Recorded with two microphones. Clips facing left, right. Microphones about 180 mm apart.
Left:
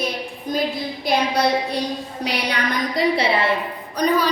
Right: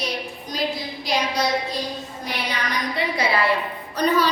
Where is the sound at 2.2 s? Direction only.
70° left (ahead or behind).